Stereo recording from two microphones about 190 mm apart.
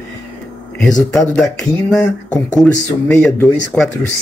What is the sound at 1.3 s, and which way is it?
Speech, 5° left (ahead or behind).